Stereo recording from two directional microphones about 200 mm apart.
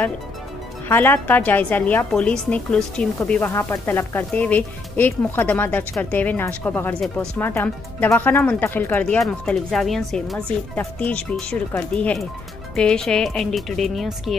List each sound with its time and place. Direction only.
0.8 s a woman's voice: 10° left (ahead or behind)